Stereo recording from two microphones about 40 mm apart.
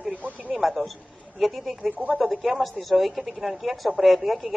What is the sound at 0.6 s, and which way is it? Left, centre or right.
A woman's voice, centre.